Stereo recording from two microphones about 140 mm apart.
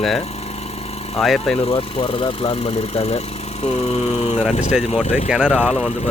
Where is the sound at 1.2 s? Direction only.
Centre (ahead or behind).